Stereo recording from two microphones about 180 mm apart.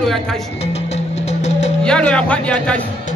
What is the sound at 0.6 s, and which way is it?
Music, 35° left (ahead or behind).